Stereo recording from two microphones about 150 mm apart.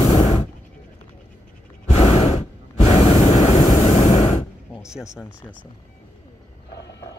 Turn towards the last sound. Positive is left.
turn(degrees=20)  # may be behind; listen again after turning